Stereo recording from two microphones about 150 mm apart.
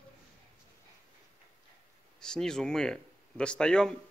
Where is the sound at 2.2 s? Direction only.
5° left (ahead or behind).